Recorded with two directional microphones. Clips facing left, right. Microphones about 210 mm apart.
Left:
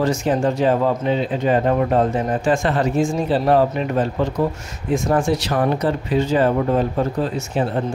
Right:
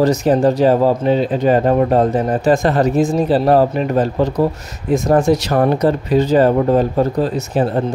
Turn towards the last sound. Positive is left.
turn(degrees=-35)  # may be behind; listen again after turning